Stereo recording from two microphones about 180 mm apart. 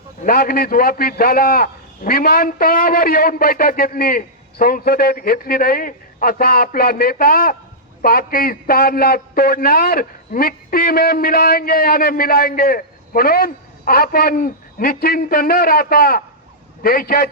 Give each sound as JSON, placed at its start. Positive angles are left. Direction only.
{"t": 0.2, "sound": "a man's voice", "side_deg": 55}